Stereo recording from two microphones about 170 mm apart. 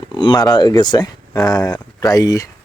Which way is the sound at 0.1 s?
25° left (ahead or behind).